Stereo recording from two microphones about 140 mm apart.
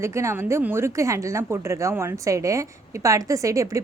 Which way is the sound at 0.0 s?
20° right (ahead or behind).